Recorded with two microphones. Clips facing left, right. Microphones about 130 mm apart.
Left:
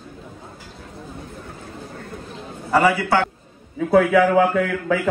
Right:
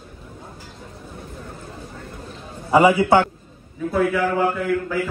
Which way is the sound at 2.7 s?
15° right (ahead or behind).